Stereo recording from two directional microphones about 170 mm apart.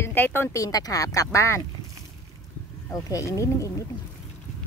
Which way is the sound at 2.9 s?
20° left (ahead or behind).